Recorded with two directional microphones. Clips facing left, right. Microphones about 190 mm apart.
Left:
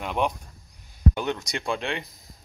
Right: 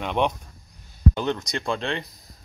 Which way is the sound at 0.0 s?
5° left (ahead or behind).